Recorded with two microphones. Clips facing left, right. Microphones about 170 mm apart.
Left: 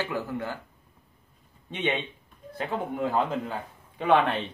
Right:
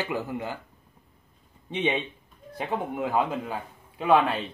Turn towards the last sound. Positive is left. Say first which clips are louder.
# right 1 dB
turn(degrees=-5)  # may be behind; listen again after turning